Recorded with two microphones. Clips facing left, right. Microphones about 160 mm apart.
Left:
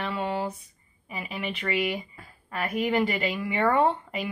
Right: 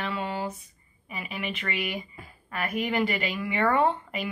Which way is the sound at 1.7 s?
Centre (ahead or behind).